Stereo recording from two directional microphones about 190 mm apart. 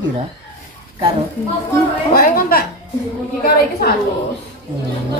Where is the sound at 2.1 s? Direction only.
50° left (ahead or behind).